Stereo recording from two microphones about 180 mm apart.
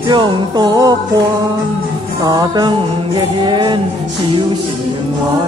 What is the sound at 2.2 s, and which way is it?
Music, 20° right (ahead or behind).